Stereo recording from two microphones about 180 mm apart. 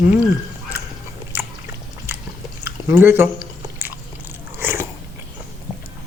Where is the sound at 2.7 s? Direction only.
15° right (ahead or behind).